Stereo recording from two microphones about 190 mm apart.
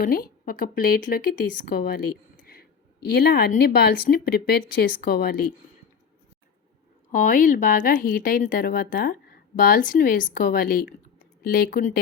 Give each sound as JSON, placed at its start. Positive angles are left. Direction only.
{"t": 0.0, "sound": "speech", "side_deg": 50}
{"t": 7.1, "sound": "speech", "side_deg": 45}